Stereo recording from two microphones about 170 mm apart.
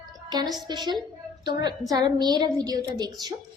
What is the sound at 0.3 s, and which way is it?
A woman's voice, 25° right (ahead or behind).